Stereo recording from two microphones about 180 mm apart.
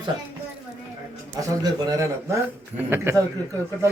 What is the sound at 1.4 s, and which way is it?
A man's voice, 20° right (ahead or behind).